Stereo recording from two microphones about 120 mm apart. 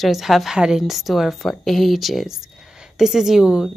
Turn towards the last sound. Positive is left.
turn(degrees=-5)  # may be behind; listen again after turning